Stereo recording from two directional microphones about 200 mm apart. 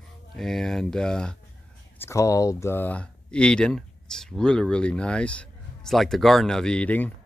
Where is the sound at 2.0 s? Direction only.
15° left (ahead or behind).